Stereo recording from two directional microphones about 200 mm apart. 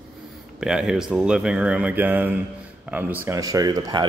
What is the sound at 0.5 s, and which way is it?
A man's voice, 5° right (ahead or behind).